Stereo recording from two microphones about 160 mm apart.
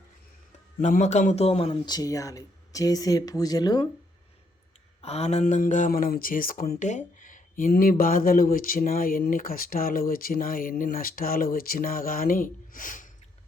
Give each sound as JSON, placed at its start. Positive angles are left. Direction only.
{"t": 0.8, "sound": "speech", "side_deg": 50}
{"t": 4.9, "sound": "speech", "side_deg": 40}
{"t": 7.7, "sound": "speech", "side_deg": 65}